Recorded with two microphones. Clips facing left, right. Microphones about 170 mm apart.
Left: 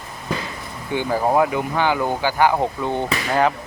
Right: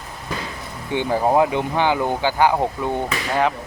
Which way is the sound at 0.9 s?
20° right (ahead or behind).